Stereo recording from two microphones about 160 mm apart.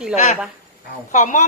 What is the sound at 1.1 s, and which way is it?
Speech, 50° left (ahead or behind).